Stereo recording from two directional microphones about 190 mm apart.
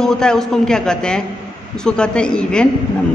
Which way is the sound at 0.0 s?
5° left (ahead or behind).